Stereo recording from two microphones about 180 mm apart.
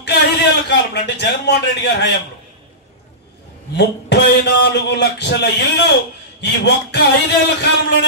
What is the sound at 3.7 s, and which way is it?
A man's voice, 70° left (ahead or behind).